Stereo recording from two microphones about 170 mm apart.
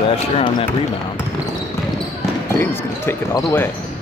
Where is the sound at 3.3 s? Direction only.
25° left (ahead or behind).